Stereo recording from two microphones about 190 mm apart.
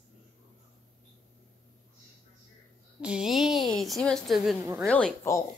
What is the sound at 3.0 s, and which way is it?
A woman's voice, 5° right (ahead or behind).